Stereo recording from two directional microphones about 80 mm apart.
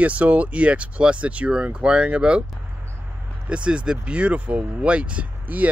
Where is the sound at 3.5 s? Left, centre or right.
Centre.